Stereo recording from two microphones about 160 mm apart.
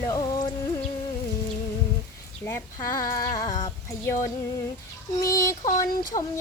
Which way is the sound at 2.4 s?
20° left (ahead or behind).